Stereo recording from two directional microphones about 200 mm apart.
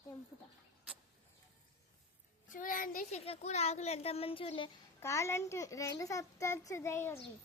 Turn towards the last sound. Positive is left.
turn(degrees=10)  # may be behind; listen again after turning